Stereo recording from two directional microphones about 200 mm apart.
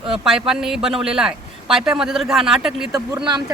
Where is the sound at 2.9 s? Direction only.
15° right (ahead or behind).